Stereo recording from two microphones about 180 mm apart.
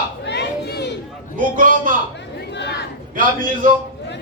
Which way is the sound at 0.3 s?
65° left (ahead or behind).